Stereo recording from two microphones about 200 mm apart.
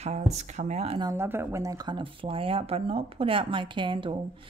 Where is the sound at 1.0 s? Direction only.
10° right (ahead or behind).